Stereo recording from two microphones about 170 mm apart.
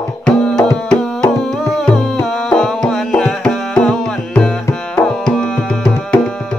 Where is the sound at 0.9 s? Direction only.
5° left (ahead or behind).